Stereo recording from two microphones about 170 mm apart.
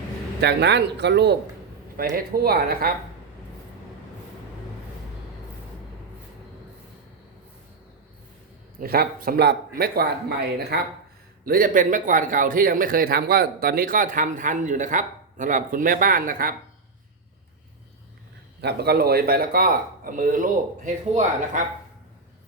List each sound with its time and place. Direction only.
0.4 s speech: 85° right
2.1 s a man's voice: 60° right (ahead or behind)
8.8 s a man's voice: 60° right (ahead or behind)
11.4 s speech: 55° right (ahead or behind)
18.6 s a man's voice: 70° right (ahead or behind); by 21.6 s 45° right (ahead or behind)